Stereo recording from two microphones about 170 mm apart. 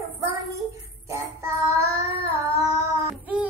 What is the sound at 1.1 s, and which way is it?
Music, 15° right (ahead or behind).